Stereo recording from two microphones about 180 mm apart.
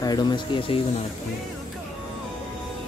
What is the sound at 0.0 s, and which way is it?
Speech, 25° left (ahead or behind).